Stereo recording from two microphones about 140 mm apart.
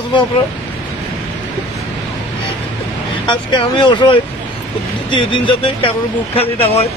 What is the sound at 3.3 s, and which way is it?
Speech, 35° left (ahead or behind).